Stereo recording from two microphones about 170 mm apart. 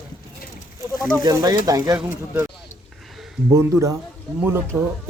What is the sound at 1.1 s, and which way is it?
Speech, 20° right (ahead or behind).